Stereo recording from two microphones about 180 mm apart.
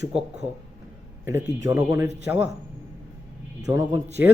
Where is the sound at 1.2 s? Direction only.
15° right (ahead or behind).